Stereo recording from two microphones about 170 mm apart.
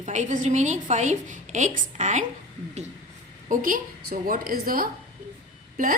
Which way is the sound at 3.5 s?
55° right (ahead or behind).